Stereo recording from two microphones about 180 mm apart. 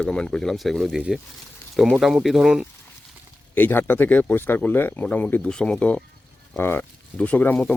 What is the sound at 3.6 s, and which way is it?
Speech, 10° left (ahead or behind).